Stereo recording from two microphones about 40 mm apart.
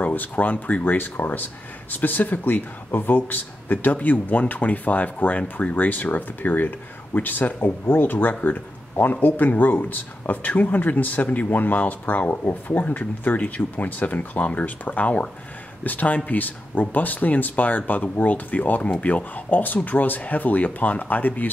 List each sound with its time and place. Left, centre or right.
0.1 s speech: left
0.9 s speech: left
18.8 s speech: left
19.3 s speech: left